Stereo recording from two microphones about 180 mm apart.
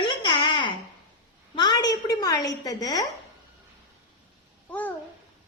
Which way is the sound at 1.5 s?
25° left (ahead or behind).